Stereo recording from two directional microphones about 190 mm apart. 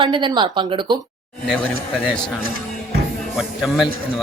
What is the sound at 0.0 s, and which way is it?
Speech, 25° right (ahead or behind).